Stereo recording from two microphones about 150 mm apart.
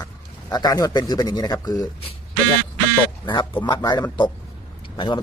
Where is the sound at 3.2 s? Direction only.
30° left (ahead or behind).